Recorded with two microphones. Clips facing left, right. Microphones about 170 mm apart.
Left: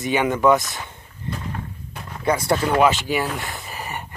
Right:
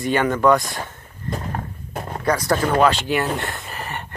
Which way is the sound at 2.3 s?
25° left (ahead or behind).